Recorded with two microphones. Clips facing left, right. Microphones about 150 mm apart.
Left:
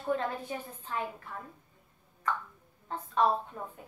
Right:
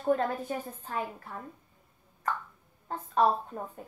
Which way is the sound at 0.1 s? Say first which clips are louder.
Right 4 dB; 45° right (ahead or behind).